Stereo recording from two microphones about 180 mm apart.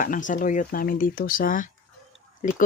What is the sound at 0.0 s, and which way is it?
Speech, 45° left (ahead or behind).